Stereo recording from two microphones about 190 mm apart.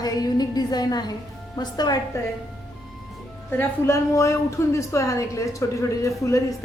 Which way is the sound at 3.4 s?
15° left (ahead or behind).